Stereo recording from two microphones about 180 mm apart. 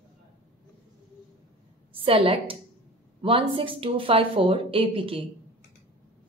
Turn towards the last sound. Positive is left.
turn(degrees=-30)  # may be behind; listen again after turning